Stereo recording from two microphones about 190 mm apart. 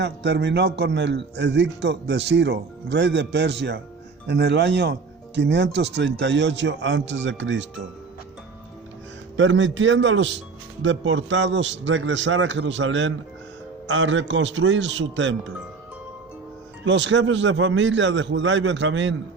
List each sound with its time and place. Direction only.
0.0 s a man's voice: 65° right (ahead or behind)
9.4 s speech: 75° right (ahead or behind)
16.8 s speech: 75° right (ahead or behind)